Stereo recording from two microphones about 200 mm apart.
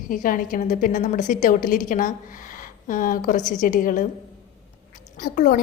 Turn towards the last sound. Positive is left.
turn(degrees=40)  # may be behind; listen again after turning